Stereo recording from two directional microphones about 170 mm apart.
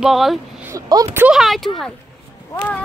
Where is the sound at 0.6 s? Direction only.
20° right (ahead or behind).